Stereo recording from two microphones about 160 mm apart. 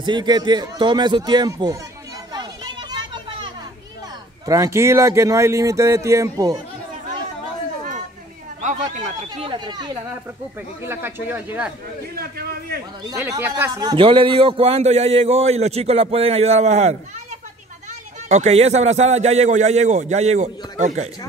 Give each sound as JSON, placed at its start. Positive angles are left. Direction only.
{"t": 0.0, "sound": "speech", "side_deg": -30}
{"t": 2.3, "sound": "a sound", "side_deg": -25}
{"t": 4.5, "sound": "speech", "side_deg": -20}
{"t": 9.3, "sound": "speech", "side_deg": -30}
{"t": 10.8, "sound": "speech", "side_deg": -15}
{"t": 12.2, "sound": "a man's voice", "side_deg": -70}
{"t": 13.1, "sound": "speech", "side_deg": -15}
{"t": 13.7, "sound": "a man's voice", "side_deg": -25}